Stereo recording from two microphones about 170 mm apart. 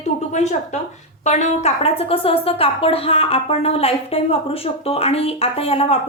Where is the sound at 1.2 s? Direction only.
45° left (ahead or behind).